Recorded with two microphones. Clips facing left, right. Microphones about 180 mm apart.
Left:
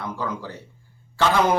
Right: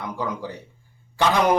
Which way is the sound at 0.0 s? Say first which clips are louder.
Right 1 dB; 15° right (ahead or behind).